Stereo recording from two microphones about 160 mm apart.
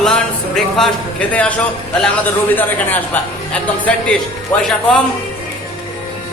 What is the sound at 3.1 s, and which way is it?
Speech, 10° left (ahead or behind).